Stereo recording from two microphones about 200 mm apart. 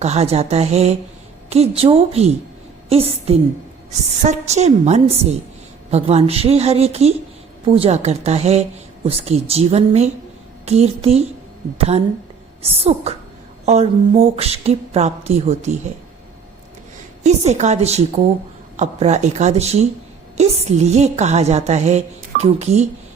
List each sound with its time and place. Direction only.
0.0 s a woman's voice: 30° right (ahead or behind)
17.2 s a woman's voice: 35° right (ahead or behind)